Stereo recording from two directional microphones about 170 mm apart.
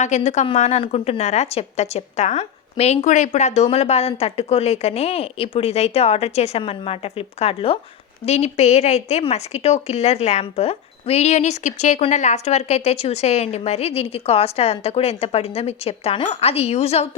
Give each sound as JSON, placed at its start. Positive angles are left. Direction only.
{"t": 0.3, "sound": "a woman's voice", "side_deg": 40}